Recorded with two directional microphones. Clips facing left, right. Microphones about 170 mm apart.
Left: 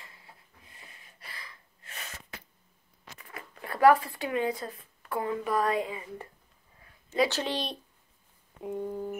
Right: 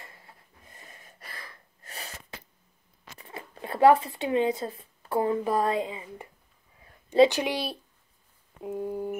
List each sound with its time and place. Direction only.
0.7 s sneeze: 45° right (ahead or behind)
3.2 s speech: 30° right (ahead or behind)
7.2 s busy signal: 15° right (ahead or behind)